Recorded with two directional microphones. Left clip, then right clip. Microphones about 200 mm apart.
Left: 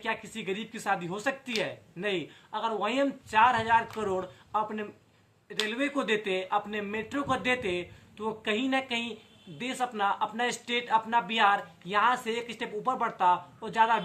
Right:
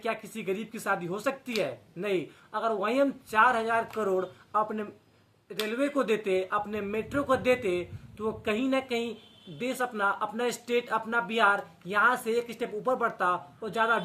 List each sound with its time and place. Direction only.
0.0 s speech: 5° right (ahead or behind)